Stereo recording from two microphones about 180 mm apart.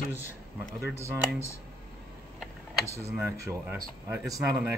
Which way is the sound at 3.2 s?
15° right (ahead or behind).